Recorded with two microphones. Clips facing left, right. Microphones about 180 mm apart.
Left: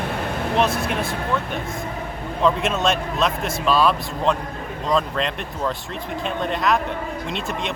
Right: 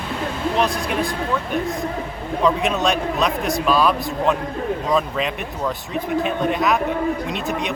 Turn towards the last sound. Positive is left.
turn(degrees=0)  # may be behind; listen again after turning